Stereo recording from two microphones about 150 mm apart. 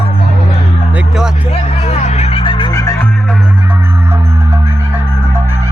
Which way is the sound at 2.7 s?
25° left (ahead or behind).